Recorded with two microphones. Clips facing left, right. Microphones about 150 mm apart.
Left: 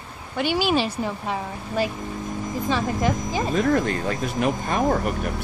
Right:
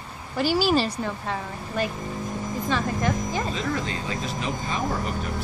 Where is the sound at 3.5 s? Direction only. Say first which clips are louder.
Left 7 dB; 50° left (ahead or behind).